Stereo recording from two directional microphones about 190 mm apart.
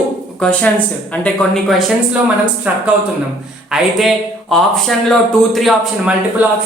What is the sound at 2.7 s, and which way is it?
A woman's voice, 10° right (ahead or behind).